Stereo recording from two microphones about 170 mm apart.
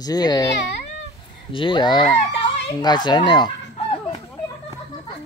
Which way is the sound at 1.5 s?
30° left (ahead or behind).